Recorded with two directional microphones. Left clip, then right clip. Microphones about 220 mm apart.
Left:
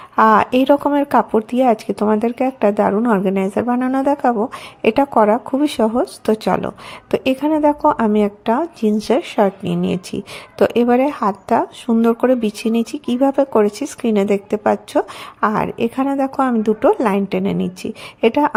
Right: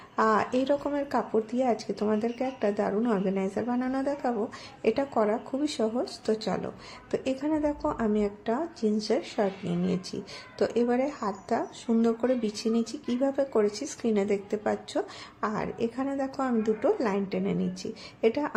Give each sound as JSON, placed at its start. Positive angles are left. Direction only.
{"t": 0.2, "sound": "speech", "side_deg": 35}